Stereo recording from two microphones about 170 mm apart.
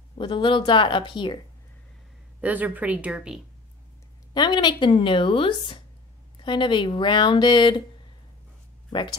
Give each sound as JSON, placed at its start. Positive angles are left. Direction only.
{"t": 0.2, "sound": "speech", "side_deg": 30}
{"t": 2.4, "sound": "speech", "side_deg": -10}
{"t": 4.3, "sound": "speech", "side_deg": 25}